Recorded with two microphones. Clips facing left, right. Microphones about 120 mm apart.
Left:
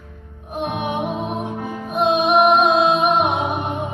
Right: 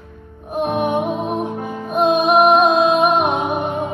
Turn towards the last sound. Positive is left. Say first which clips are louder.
# right 2 dB
turn(degrees=-45)  # may be behind; listen again after turning